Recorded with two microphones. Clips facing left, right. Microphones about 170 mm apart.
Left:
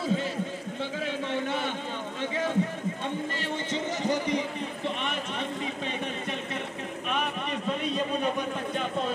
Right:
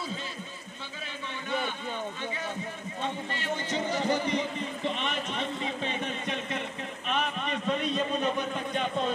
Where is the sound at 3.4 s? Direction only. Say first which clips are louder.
Even; 25° left (ahead or behind).